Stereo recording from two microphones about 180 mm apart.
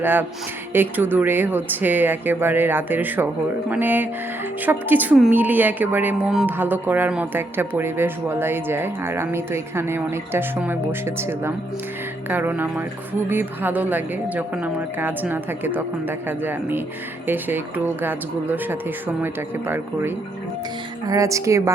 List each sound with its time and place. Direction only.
0.0 s a woman's voice: 10° right (ahead or behind)